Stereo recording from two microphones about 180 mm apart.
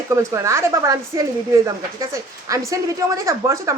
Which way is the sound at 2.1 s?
15° right (ahead or behind).